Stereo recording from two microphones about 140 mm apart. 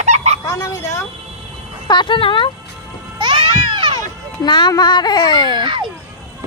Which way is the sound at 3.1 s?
35° right (ahead or behind).